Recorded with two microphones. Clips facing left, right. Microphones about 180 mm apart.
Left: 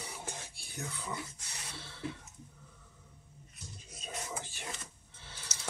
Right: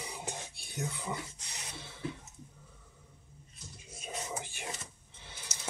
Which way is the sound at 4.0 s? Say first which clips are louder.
Right 2 dB; 15° right (ahead or behind).